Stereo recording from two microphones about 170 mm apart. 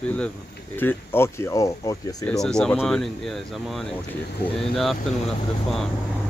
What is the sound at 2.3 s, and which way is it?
Speech, 5° left (ahead or behind).